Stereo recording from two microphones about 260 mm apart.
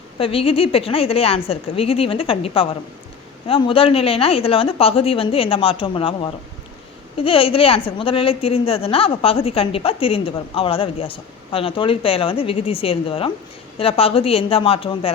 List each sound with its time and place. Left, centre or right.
0.2 s a woman's voice: left